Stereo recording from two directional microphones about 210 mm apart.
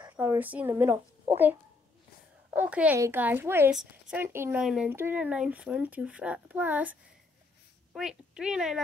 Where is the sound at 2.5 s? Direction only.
5° right (ahead or behind).